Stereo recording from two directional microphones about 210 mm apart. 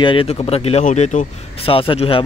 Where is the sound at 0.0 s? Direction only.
25° left (ahead or behind).